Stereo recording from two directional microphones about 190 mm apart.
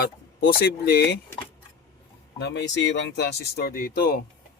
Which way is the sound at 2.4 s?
60° left (ahead or behind).